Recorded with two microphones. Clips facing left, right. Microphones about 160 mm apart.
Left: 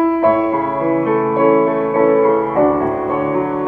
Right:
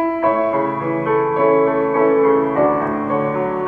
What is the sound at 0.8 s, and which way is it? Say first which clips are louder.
Music: left 5 dB; 30° left (ahead or behind).